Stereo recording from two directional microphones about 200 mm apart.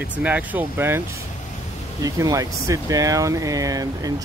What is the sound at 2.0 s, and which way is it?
Speech, 15° right (ahead or behind).